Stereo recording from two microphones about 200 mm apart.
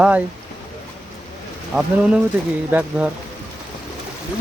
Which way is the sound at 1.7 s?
5° right (ahead or behind).